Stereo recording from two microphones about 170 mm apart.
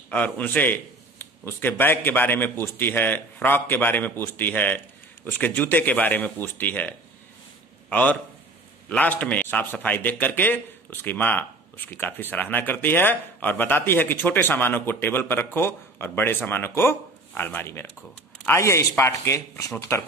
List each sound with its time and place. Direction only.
0.1 s a man's voice: 10° left (ahead or behind)